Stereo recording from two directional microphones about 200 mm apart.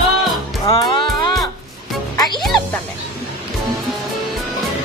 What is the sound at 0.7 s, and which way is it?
Speech, 20° left (ahead or behind).